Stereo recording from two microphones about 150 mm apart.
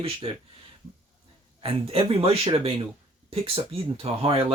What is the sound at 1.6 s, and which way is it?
Speech, 40° right (ahead or behind).